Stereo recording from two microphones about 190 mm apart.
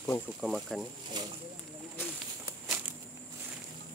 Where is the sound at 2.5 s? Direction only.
10° right (ahead or behind).